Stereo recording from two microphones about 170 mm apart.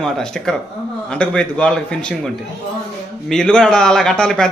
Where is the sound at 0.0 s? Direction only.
5° left (ahead or behind).